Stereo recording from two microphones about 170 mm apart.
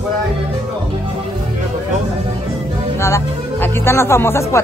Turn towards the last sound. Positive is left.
turn(degrees=15)  # may be behind; listen again after turning